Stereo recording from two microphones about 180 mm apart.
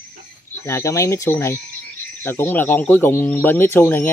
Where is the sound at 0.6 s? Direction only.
15° left (ahead or behind).